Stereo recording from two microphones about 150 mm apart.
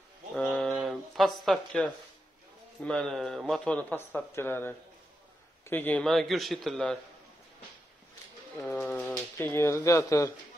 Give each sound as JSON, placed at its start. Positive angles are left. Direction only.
{"t": 0.4, "sound": "a sound", "side_deg": 5}
{"t": 2.8, "sound": "speech", "side_deg": 5}
{"t": 8.5, "sound": "bird", "side_deg": 10}
{"t": 9.4, "sound": "speech", "side_deg": 15}